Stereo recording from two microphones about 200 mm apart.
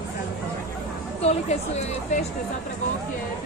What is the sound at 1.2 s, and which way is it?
Speech, 30° left (ahead or behind).